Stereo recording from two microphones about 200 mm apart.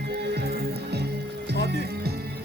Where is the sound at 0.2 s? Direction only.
55° right (ahead or behind).